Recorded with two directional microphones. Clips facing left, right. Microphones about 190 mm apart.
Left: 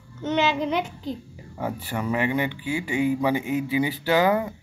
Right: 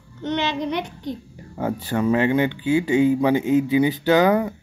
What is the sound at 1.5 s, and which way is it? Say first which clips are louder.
Speech: right 6 dB; 25° right (ahead or behind).